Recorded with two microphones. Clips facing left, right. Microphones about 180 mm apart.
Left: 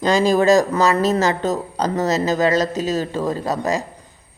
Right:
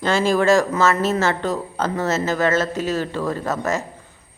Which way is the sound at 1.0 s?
40° left (ahead or behind).